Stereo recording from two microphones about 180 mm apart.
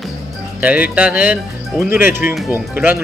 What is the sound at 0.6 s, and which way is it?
A man's voice, 10° right (ahead or behind).